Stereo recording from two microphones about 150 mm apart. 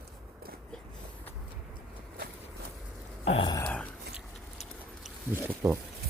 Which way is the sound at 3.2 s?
40° left (ahead or behind).